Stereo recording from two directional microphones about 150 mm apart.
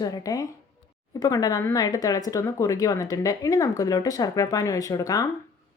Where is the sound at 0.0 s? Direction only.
25° left (ahead or behind).